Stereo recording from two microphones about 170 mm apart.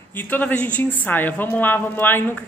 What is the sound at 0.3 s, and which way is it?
A man's voice, 10° left (ahead or behind).